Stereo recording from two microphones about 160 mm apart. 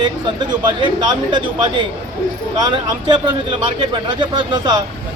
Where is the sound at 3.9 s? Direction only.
30° right (ahead or behind).